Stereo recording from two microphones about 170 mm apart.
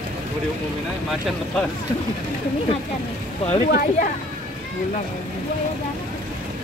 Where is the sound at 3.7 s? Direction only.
60° left (ahead or behind).